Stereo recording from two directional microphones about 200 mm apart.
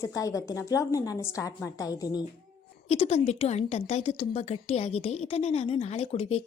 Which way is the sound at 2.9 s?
30° left (ahead or behind).